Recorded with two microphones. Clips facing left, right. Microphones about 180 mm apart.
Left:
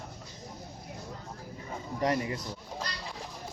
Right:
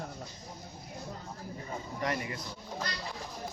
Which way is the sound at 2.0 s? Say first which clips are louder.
Left 6 dB; 35° left (ahead or behind).